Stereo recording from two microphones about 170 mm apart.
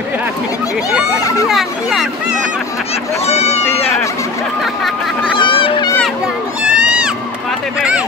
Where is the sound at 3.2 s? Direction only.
40° left (ahead or behind).